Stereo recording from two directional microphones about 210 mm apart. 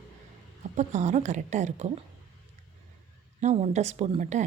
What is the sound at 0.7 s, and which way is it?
A woman's voice, 35° right (ahead or behind).